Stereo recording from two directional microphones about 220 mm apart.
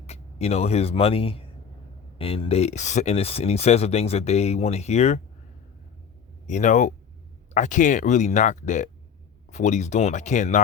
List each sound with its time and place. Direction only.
0.1 s speech: 30° left (ahead or behind)
6.5 s speech: 35° left (ahead or behind)